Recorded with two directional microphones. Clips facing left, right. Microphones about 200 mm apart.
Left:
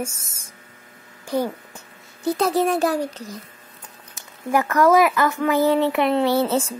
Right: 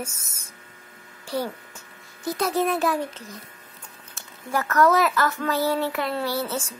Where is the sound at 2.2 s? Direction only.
30° left (ahead or behind).